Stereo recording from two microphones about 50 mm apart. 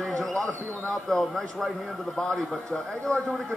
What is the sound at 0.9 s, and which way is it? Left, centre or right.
Speech, centre.